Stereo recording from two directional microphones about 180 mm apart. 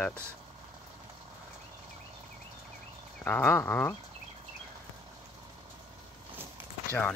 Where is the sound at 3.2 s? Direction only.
10° left (ahead or behind).